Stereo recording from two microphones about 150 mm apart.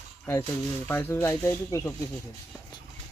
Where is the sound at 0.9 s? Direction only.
15° left (ahead or behind).